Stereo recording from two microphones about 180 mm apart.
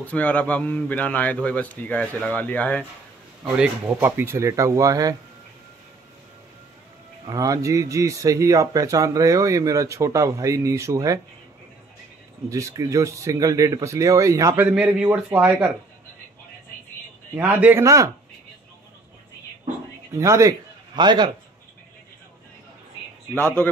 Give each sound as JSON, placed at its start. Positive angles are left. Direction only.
{"t": 0.0, "sound": "a man's voice", "side_deg": 10}
{"t": 3.4, "sound": "speech", "side_deg": -10}
{"t": 7.2, "sound": "speech", "side_deg": -20}
{"t": 12.4, "sound": "speech", "side_deg": -20}
{"t": 17.4, "sound": "speech", "side_deg": -10}
{"t": 20.2, "sound": "a man's voice", "side_deg": -15}